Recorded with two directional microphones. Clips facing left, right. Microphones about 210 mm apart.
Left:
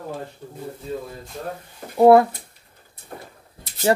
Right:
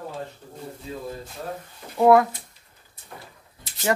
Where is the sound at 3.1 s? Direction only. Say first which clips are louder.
Left 5 dB; 45° left (ahead or behind).